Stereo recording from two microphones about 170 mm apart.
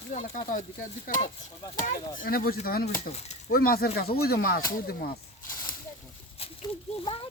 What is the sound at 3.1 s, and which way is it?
Speech, 40° left (ahead or behind).